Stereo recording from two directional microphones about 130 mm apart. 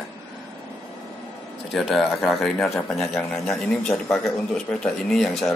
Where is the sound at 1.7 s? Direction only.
Centre (ahead or behind).